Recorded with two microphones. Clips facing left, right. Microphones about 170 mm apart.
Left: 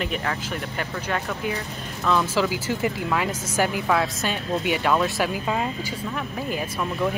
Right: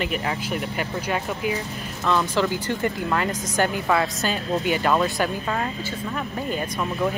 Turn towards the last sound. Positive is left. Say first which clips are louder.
# right 1 dB
turn(degrees=5)  # may be behind; listen again after turning